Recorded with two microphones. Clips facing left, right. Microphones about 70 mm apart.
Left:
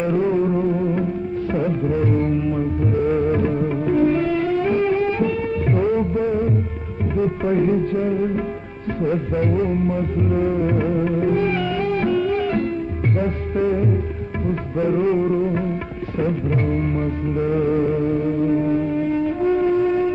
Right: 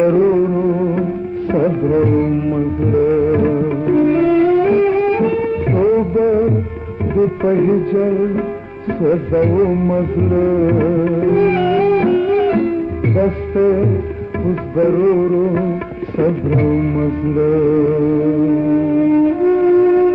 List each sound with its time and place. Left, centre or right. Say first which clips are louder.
0.0 s music: right 7 dB; right
3.1 s music: right 4 dB; centre
3.3 s music: right 5 dB; centre
18.9 s music: right 8 dB; right